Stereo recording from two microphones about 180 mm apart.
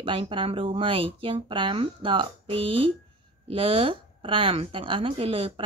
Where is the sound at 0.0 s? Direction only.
30° right (ahead or behind).